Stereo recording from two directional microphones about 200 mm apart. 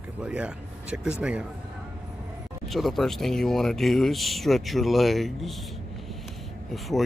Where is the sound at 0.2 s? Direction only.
5° right (ahead or behind).